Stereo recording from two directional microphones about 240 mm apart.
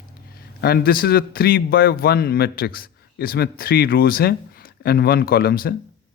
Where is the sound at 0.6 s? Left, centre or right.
Left.